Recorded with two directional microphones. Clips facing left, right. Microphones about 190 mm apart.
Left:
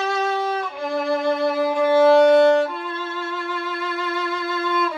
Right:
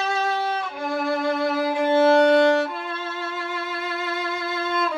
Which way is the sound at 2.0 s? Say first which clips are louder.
Left 3 dB; 5° left (ahead or behind).